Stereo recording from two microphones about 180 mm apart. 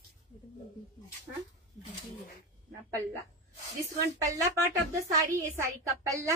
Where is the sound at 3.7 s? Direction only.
15° right (ahead or behind).